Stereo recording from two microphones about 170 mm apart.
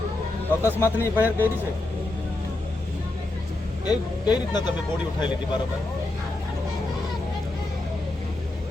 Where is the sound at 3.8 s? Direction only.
25° left (ahead or behind).